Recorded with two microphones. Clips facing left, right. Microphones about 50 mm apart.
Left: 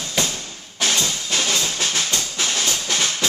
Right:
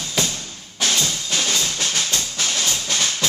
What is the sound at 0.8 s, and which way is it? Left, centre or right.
Music, centre.